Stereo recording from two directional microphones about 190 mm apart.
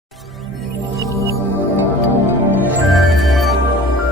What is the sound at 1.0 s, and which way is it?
Music, 15° left (ahead or behind).